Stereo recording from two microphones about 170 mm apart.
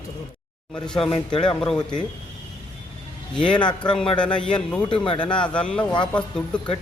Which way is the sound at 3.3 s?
5° left (ahead or behind).